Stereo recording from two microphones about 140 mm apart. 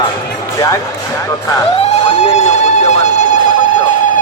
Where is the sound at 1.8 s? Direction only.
55° left (ahead or behind).